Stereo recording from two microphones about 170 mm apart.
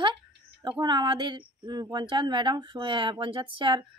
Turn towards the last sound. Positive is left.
turn(degrees=-30)  # may be behind; listen again after turning